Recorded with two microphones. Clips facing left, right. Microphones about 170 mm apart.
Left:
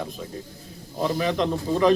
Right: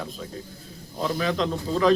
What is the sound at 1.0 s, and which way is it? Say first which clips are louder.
Speech: left 2 dB; 20° left (ahead or behind).